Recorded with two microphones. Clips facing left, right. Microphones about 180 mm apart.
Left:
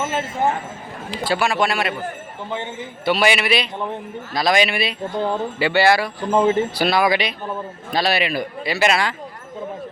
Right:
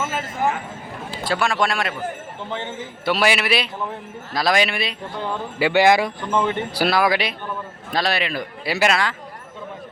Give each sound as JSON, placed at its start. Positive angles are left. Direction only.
{"t": 0.1, "sound": "speech", "side_deg": 30}
{"t": 1.2, "sound": "speech", "side_deg": 5}
{"t": 2.5, "sound": "a man's voice", "side_deg": 15}
{"t": 3.0, "sound": "speech", "side_deg": 0}
{"t": 5.5, "sound": "speech", "side_deg": -15}
{"t": 6.2, "sound": "speech", "side_deg": 40}
{"t": 6.7, "sound": "a man's voice", "side_deg": -10}
{"t": 8.6, "sound": "speech", "side_deg": -5}
{"t": 8.9, "sound": "a man's voice", "side_deg": 10}